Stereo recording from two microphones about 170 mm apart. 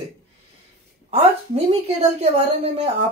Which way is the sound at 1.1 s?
40° right (ahead or behind).